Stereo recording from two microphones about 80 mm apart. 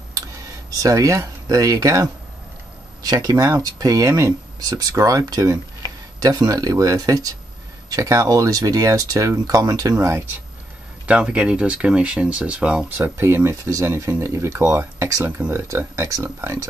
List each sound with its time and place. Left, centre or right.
0.8 s speech: right
11.1 s speech: centre
12.9 s speech: right
13.7 s speech: right